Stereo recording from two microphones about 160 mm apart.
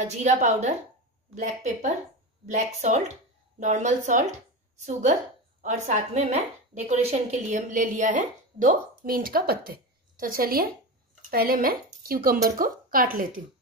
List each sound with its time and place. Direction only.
0.0 s a woman's voice: 45° right (ahead or behind)